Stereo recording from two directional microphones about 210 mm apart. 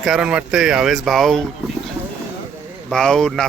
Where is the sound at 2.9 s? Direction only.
5° left (ahead or behind).